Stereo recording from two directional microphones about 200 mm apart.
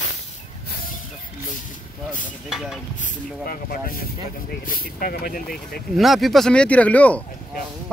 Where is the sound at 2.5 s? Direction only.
Centre (ahead or behind).